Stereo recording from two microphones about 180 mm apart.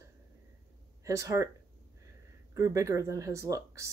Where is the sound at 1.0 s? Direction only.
20° right (ahead or behind).